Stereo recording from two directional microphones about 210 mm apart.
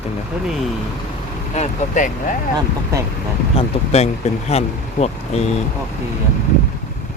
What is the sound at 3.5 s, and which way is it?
Speech, 30° left (ahead or behind).